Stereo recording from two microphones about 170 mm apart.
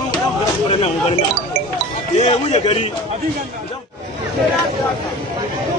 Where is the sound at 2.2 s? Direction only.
35° left (ahead or behind).